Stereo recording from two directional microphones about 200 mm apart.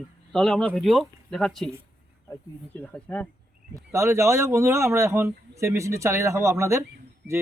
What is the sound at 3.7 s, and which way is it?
Speech, 15° right (ahead or behind).